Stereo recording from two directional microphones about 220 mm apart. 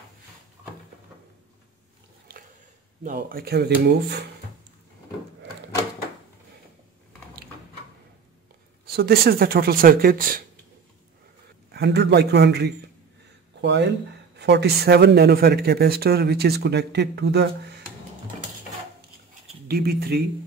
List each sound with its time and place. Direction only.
3.0 s speech: 40° right (ahead or behind)
8.9 s speech: 45° right (ahead or behind)
11.7 s speech: 50° right (ahead or behind)
19.7 s speech: 45° right (ahead or behind)